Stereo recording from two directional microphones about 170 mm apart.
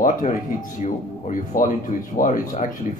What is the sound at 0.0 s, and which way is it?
Speech, 50° left (ahead or behind).